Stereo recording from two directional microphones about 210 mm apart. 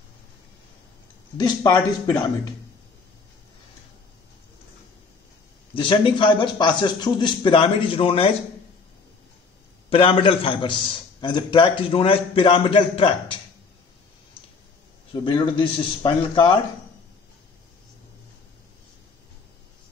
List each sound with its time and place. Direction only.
1.4 s a man's voice: 20° left (ahead or behind)
5.8 s a man's voice: 25° left (ahead or behind)
9.8 s a man's voice: 25° left (ahead or behind)
15.2 s a man's voice: 25° left (ahead or behind)